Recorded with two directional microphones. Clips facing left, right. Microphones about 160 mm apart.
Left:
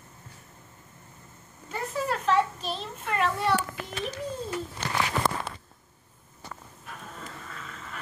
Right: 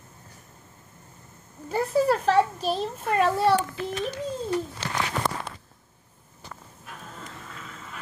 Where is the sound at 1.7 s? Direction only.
35° right (ahead or behind).